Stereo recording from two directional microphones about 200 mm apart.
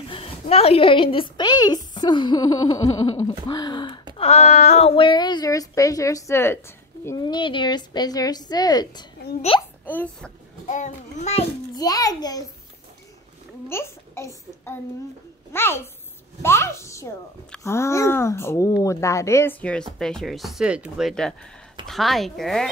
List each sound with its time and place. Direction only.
0.1 s a woman's voice: 30° left (ahead or behind)
9.8 s speech: 10° left (ahead or behind)
10.7 s a child's voice: 35° left (ahead or behind)
11.7 s speech: 20° left (ahead or behind)
13.7 s speech: 10° left (ahead or behind)